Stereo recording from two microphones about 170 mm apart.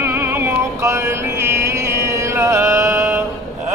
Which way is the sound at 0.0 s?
15° right (ahead or behind).